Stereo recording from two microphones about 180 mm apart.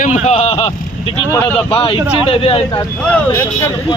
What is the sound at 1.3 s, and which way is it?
Speech, 10° left (ahead or behind).